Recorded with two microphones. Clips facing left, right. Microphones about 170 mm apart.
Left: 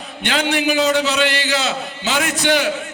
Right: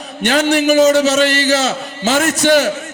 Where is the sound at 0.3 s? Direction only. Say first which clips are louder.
Right 6 dB; 45° right (ahead or behind).